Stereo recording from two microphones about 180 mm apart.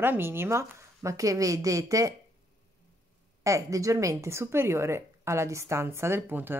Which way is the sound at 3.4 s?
15° right (ahead or behind).